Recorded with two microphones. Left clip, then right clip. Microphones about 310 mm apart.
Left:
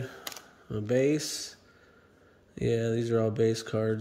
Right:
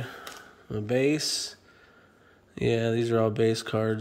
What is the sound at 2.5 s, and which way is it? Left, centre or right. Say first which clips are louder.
Speech: right 3 dB; centre.